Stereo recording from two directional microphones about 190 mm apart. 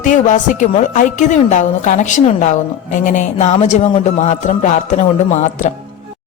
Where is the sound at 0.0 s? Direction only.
40° left (ahead or behind).